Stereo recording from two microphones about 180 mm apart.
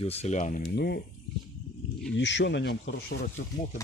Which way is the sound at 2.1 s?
85° left.